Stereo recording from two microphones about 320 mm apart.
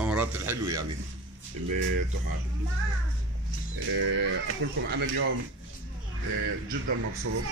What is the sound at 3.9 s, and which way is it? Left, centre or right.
Speech, right.